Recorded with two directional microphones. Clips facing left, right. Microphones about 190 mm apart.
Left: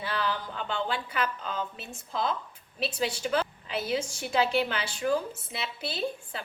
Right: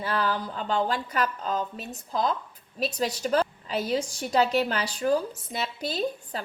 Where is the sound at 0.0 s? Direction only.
45° right (ahead or behind).